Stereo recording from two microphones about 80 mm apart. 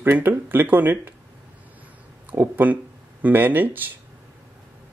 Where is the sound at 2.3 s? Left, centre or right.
Right.